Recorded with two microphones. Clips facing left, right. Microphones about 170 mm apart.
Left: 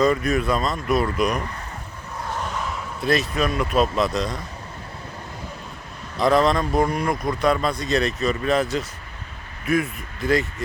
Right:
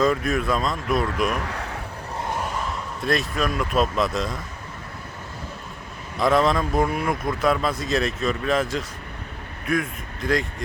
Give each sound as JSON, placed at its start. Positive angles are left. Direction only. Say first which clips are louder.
{"t": 0.0, "sound": "a man's voice", "louder": "left 2 dB", "side_deg": 0}
{"t": 1.4, "sound": "a sound", "louder": "right 2 dB", "side_deg": -85}
{"t": 2.6, "sound": "speech", "louder": "left 5 dB", "side_deg": 0}
{"t": 6.1, "sound": "a man's voice", "louder": "left 1 dB", "side_deg": 0}